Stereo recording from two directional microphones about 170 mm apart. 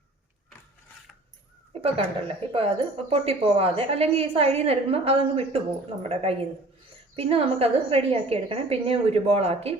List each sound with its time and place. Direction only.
1.8 s a woman's voice: 35° right (ahead or behind)